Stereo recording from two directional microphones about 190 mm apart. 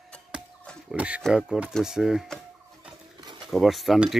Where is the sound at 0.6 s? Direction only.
5° left (ahead or behind).